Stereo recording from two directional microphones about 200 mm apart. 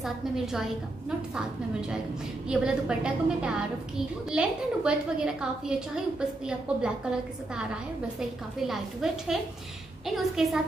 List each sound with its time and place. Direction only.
0.0 s a woman's voice: centre (ahead or behind)